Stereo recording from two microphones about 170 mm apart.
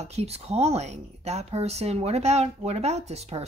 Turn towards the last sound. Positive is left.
turn(degrees=-40)  # may be behind; listen again after turning